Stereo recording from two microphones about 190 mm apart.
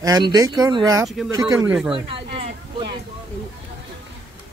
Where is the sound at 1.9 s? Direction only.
30° right (ahead or behind).